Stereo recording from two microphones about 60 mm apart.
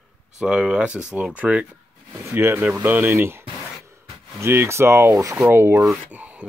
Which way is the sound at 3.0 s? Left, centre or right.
Right.